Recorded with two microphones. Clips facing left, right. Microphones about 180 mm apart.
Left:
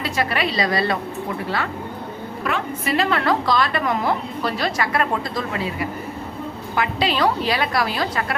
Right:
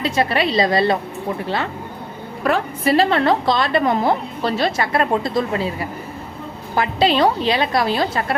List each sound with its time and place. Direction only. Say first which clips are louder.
0.0 s a woman's voice: right 4 dB; 25° right (ahead or behind)
2.4 s a woman's voice: right 6 dB; 35° right (ahead or behind)
6.7 s a woman's voice: right 5 dB; 30° right (ahead or behind)